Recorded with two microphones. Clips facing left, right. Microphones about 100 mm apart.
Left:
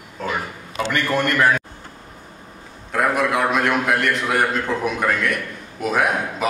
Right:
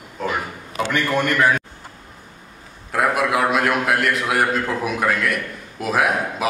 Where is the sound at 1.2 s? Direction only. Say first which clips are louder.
Even; 10° right (ahead or behind).